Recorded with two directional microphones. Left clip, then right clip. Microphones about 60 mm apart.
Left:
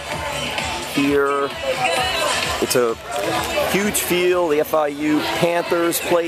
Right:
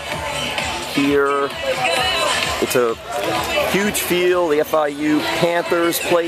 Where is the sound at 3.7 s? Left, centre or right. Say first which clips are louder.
Right 1 dB; centre.